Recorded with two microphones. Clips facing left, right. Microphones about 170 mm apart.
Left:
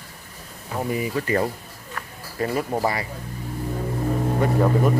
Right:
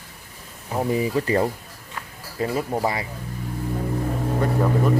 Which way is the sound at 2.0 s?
20° right (ahead or behind).